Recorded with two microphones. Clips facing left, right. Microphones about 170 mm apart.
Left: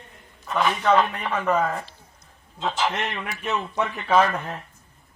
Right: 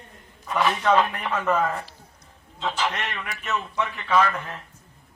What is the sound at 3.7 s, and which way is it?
Speech, 30° left (ahead or behind).